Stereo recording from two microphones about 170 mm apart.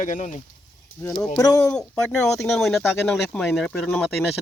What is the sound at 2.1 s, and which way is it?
Speech, centre (ahead or behind).